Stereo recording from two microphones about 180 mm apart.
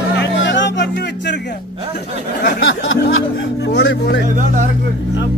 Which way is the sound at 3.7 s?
70° left (ahead or behind).